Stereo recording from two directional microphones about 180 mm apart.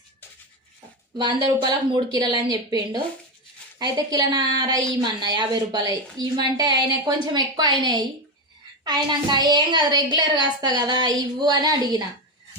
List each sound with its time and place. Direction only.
1.2 s a woman's voice: 25° right (ahead or behind)